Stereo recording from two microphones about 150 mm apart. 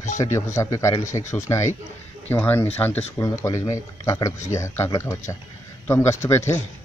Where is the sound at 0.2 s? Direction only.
20° left (ahead or behind).